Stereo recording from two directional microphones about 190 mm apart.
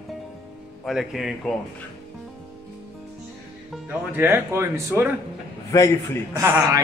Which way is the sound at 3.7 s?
10° right (ahead or behind).